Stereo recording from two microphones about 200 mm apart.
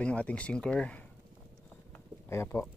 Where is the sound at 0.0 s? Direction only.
5° left (ahead or behind).